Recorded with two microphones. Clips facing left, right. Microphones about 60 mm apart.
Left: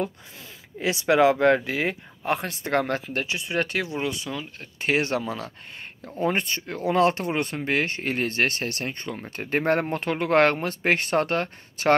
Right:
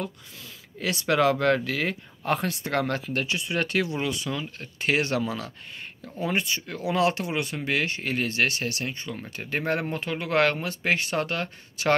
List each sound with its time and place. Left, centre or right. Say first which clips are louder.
0.7 s speech: left 4 dB; centre
2.8 s speech: left 1 dB; left
6.2 s speech: left 2 dB; left
9.5 s speech: left 4 dB; left
9.9 s speech: left 3 dB; left